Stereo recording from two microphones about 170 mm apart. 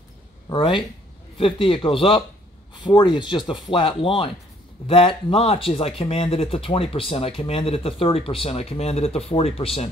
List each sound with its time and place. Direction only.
0.5 s speech: 30° left (ahead or behind)